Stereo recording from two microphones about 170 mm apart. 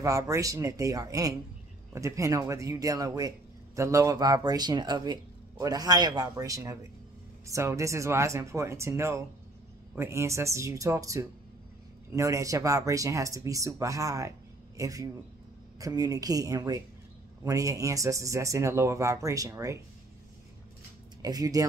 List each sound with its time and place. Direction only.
0.0 s speech: 20° right (ahead or behind)
21.2 s speech: 20° right (ahead or behind)